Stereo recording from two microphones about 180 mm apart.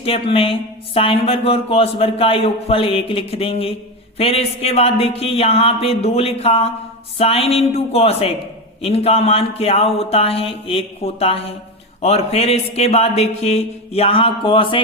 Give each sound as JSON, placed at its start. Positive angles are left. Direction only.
{"t": 0.0, "sound": "speech", "side_deg": 30}